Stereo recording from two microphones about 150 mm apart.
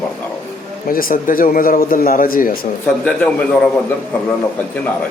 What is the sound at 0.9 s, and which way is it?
A man's voice, 70° left (ahead or behind).